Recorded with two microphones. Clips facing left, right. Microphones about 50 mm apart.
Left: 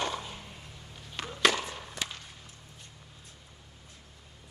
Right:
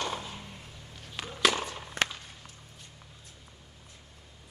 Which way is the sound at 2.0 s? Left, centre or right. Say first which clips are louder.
Right 9 dB; right.